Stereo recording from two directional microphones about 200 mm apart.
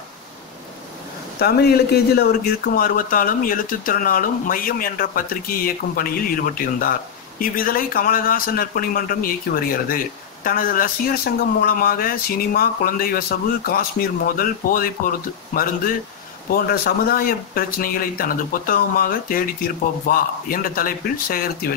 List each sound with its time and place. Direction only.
1.4 s speech: 55° left (ahead or behind)